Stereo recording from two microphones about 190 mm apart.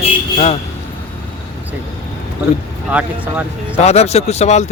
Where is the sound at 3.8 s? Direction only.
35° left (ahead or behind).